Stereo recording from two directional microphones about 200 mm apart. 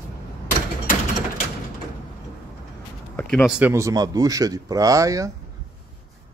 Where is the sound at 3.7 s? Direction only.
15° right (ahead or behind).